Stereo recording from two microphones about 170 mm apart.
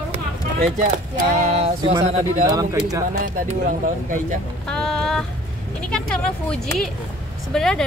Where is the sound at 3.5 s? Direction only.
50° right (ahead or behind).